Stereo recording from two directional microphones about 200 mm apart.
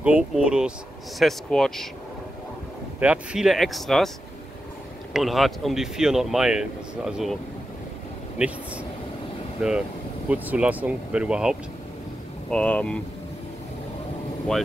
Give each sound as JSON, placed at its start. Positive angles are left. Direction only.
{"t": 0.0, "sound": "speech", "side_deg": -5}
{"t": 3.0, "sound": "speech", "side_deg": -5}
{"t": 5.1, "sound": "speech", "side_deg": 0}
{"t": 9.6, "sound": "speech", "side_deg": -5}